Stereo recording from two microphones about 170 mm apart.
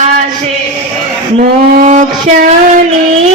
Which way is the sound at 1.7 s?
50° right (ahead or behind).